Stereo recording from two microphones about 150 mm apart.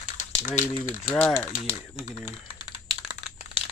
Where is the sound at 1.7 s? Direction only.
45° left (ahead or behind).